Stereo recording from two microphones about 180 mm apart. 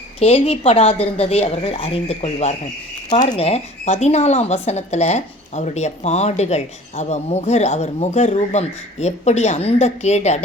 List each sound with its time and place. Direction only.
0.2 s speech: 35° left (ahead or behind)